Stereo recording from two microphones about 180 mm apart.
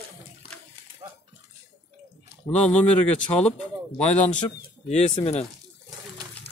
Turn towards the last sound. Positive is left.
turn(degrees=40)  # may be behind; listen again after turning